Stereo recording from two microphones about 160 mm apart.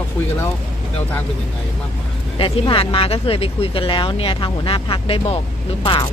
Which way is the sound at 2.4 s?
35° left (ahead or behind).